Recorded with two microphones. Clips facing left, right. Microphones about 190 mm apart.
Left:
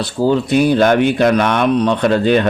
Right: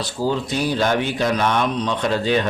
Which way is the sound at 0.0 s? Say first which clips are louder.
Left 7 dB; 60° left (ahead or behind).